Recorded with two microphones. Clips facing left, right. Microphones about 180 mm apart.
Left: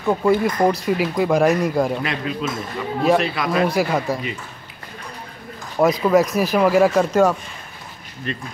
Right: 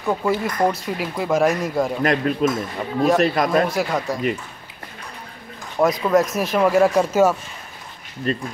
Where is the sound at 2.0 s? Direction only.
50° right (ahead or behind).